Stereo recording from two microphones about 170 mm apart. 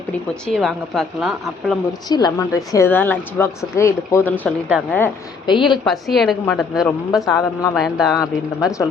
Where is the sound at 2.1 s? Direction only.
25° left (ahead or behind).